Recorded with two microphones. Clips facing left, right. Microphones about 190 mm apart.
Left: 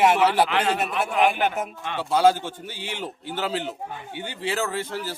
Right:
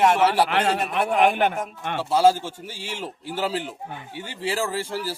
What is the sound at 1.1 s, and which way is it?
Speech, 55° right (ahead or behind).